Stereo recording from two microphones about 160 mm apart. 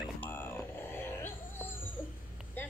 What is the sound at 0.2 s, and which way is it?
Dog, 15° left (ahead or behind).